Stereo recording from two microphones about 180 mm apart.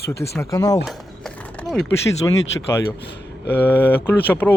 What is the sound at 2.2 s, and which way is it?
Speech, 20° left (ahead or behind).